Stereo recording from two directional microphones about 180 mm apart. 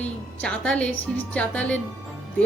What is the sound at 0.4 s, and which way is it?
Speech, 5° left (ahead or behind).